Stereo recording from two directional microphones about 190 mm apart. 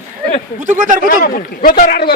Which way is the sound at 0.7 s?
45° right (ahead or behind).